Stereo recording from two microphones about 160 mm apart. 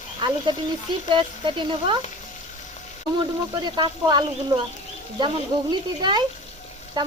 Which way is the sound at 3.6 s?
30° right (ahead or behind).